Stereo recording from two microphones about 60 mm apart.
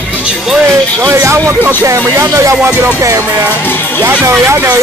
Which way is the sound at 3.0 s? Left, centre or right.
Right.